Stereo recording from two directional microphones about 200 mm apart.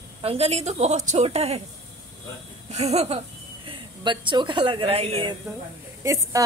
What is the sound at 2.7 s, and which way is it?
A woman's voice, 30° right (ahead or behind).